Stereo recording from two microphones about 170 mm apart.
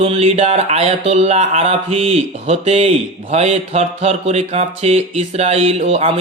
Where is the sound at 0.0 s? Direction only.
35° right (ahead or behind).